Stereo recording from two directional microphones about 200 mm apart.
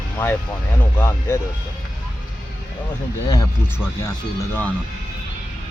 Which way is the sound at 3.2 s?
20° left (ahead or behind).